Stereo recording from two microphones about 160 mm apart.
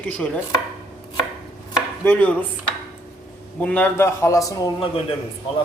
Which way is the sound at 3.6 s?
15° left (ahead or behind).